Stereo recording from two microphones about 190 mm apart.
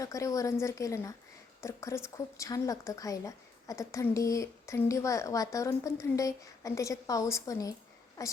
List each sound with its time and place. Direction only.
0.0 s a woman's voice: 15° left (ahead or behind)